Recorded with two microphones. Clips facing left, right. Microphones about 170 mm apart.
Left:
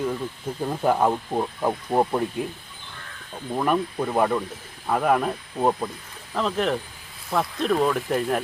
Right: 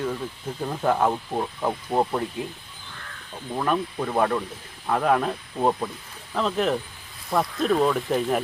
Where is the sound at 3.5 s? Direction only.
10° left (ahead or behind).